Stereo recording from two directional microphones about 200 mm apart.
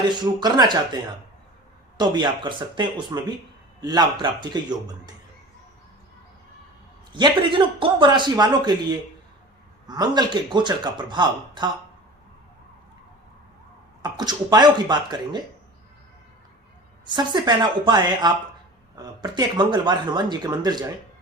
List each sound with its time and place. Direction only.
0.1 s speech: 20° right (ahead or behind)
2.0 s speech: 20° right (ahead or behind)
7.1 s speech: 25° right (ahead or behind)
14.0 s speech: 20° right (ahead or behind)
17.1 s speech: 20° right (ahead or behind)